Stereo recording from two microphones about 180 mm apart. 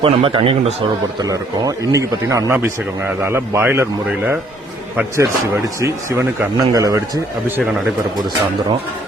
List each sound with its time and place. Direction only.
0.0 s speech: 30° right (ahead or behind)
1.2 s a man's voice: 20° right (ahead or behind)